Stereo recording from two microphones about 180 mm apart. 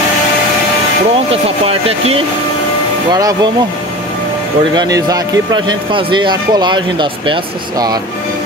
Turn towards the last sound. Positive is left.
turn(degrees=-25)  # may be behind; listen again after turning